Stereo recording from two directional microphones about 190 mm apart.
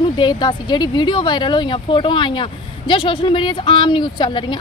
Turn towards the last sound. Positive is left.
turn(degrees=25)  # may be behind; listen again after turning